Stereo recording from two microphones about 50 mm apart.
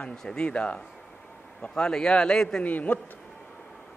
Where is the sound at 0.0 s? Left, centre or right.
Centre.